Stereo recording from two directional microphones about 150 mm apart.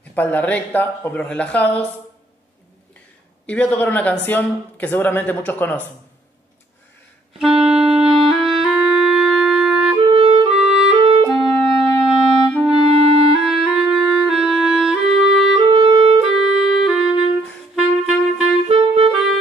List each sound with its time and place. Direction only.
0.1 s speech: 10° left (ahead or behind)
3.4 s speech: 10° left (ahead or behind)
7.3 s music: 5° right (ahead or behind)
8.3 s clarinet: centre (ahead or behind)
9.9 s clarinet: 35° right (ahead or behind)
10.5 s clarinet: 5° right (ahead or behind)
10.9 s clarinet: 40° right (ahead or behind)
11.4 s clarinet: centre (ahead or behind)
12.9 s clarinet: 40° right (ahead or behind)
13.4 s clarinet: 5° right (ahead or behind)
15.5 s clarinet: 35° right (ahead or behind)
16.3 s music: centre (ahead or behind)
18.7 s music: 35° right (ahead or behind)